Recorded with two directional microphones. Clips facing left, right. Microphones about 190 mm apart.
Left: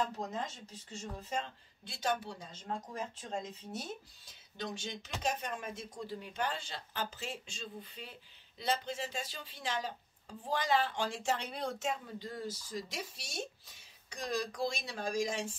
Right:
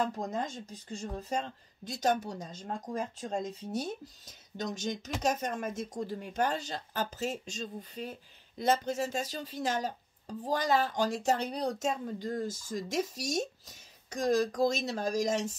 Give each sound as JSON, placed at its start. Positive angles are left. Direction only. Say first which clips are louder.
{"t": 0.0, "sound": "speech", "louder": "right 4 dB", "side_deg": -45}